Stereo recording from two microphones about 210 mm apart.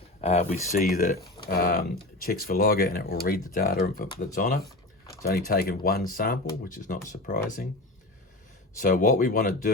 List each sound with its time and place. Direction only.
0.2 s speech: 30° left (ahead or behind)
8.8 s speech: 40° left (ahead or behind)